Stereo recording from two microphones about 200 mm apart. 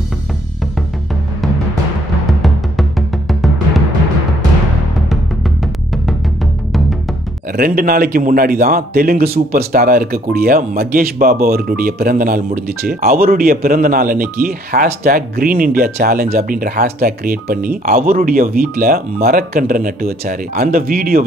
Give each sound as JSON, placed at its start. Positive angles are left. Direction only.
{"t": 2.4, "sound": "music", "side_deg": 0}
{"t": 7.5, "sound": "speech", "side_deg": -45}